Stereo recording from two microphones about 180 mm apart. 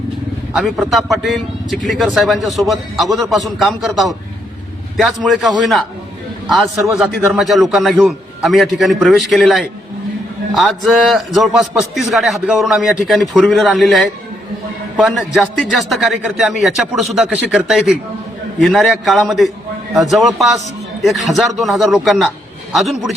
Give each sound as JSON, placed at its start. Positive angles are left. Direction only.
{"t": 0.5, "sound": "a man's voice", "side_deg": 0}